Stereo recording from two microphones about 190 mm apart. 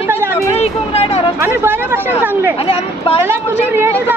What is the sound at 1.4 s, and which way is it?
Speech, 15° right (ahead or behind).